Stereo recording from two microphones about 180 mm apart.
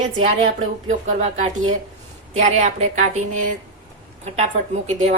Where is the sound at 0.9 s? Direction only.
40° right (ahead or behind).